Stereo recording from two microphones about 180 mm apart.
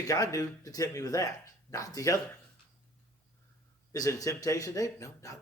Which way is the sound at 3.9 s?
20° left (ahead or behind).